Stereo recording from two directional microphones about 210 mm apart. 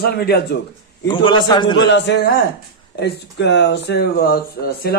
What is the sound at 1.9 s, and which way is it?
Speech, 55° left (ahead or behind).